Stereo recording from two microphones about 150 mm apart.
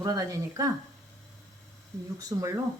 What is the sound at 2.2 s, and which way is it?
Speech, 20° right (ahead or behind).